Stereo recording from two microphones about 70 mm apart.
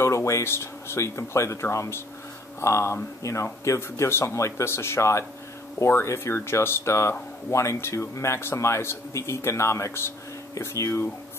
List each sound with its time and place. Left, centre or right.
0.0 s speech: left